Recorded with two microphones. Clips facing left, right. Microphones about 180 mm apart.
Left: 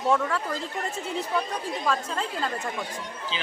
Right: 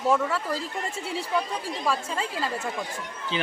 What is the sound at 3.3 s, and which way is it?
Speech, 55° right (ahead or behind).